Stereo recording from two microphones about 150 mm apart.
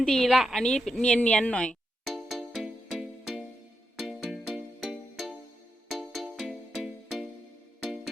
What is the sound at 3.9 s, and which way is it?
Music, centre (ahead or behind).